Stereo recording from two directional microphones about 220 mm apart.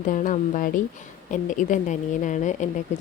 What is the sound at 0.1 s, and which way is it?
A woman's voice, 35° left (ahead or behind).